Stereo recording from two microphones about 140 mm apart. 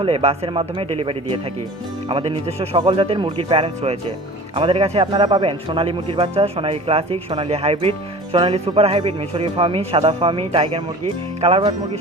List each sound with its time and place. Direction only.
0.0 s speech: 45° right (ahead or behind)